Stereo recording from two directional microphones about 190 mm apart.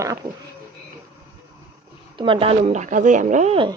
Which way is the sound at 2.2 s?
25° right (ahead or behind).